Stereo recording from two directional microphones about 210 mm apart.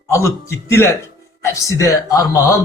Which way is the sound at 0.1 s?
15° left (ahead or behind).